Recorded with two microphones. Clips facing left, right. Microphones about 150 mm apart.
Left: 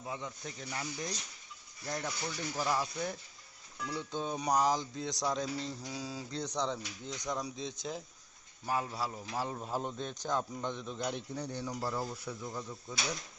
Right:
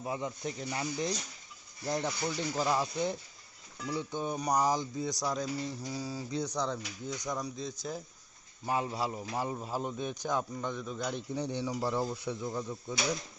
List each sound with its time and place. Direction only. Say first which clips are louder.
0.0 s a man's voice: right 6 dB; 30° right (ahead or behind); by 7.7 s centre (ahead or behind)
8.6 s a man's voice: right 3 dB; 20° right (ahead or behind)
9.6 s a man's voice: right 2 dB; 5° right (ahead or behind)
11.3 s speech: right 5 dB; 20° right (ahead or behind)
11.6 s speech: right 4 dB; 5° right (ahead or behind)
11.9 s speech: right 5 dB; 20° right (ahead or behind)